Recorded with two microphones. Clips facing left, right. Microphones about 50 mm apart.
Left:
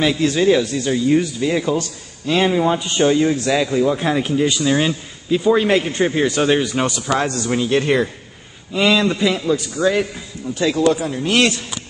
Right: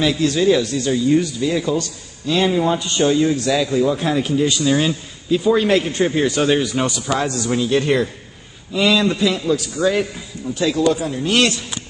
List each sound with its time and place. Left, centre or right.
0.0 s a man's voice: centre
6.8 s a man's voice: left